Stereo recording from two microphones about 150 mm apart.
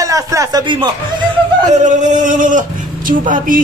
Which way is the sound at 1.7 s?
55° right (ahead or behind).